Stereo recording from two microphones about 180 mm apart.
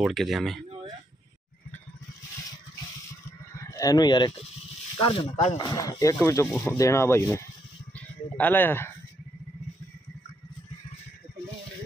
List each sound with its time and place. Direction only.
0.0 s speech: centre (ahead or behind)
3.5 s a sound: 15° left (ahead or behind)
5.0 s speech: 30° left (ahead or behind)
5.6 s speech: 20° left (ahead or behind)